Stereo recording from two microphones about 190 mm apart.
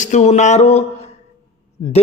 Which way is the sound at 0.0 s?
40° left (ahead or behind).